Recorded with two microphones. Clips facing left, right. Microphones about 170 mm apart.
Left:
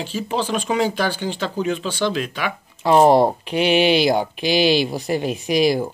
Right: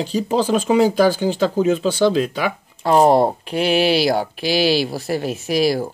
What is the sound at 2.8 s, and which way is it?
Speech, centre (ahead or behind).